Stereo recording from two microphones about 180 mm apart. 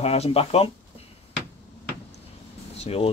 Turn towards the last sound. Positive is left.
turn(degrees=35)  # may be behind; listen again after turning